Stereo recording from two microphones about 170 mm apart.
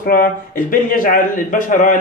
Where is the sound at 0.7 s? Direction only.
55° left (ahead or behind).